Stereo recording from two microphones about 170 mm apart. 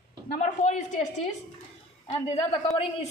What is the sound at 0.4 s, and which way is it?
Speech, 45° left (ahead or behind).